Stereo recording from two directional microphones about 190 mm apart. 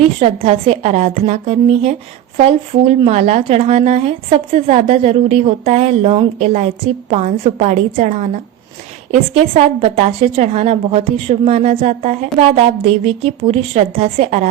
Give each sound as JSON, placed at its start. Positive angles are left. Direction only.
{"t": 0.2, "sound": "speech", "side_deg": -30}